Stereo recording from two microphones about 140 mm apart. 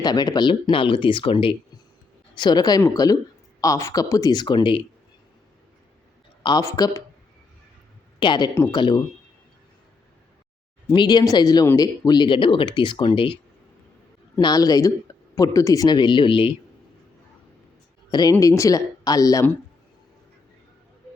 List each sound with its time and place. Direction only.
0.0 s speech: 30° left (ahead or behind)
2.4 s speech: 30° left (ahead or behind)
6.4 s speech: 25° left (ahead or behind)
8.2 s speech: 35° left (ahead or behind)
10.9 s speech: 30° left (ahead or behind)
14.3 s speech: 25° left (ahead or behind)
18.1 s speech: 25° left (ahead or behind)